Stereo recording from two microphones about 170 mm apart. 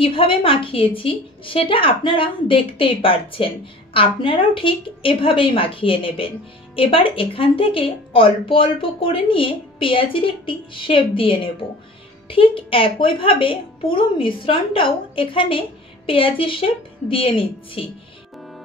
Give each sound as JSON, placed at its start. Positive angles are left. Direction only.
{"t": 0.0, "sound": "a woman's voice", "side_deg": 30}